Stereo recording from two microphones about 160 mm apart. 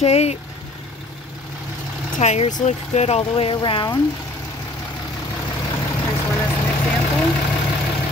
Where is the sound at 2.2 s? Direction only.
45° left (ahead or behind).